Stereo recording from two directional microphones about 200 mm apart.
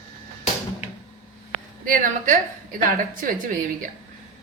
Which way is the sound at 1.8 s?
40° right (ahead or behind).